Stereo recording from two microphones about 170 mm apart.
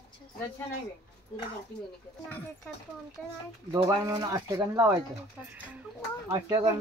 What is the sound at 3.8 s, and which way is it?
Speech, 20° right (ahead or behind).